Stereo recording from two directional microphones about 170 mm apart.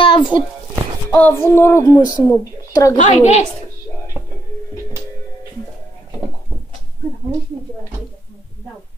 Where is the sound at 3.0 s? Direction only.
40° left (ahead or behind).